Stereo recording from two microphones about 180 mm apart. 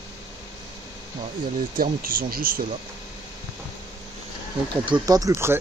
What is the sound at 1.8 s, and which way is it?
Speech, 50° right (ahead or behind).